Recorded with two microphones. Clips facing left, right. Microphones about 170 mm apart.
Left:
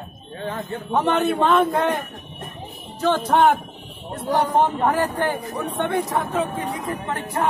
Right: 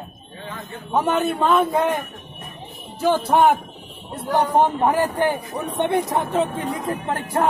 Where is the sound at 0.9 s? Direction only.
5° right (ahead or behind).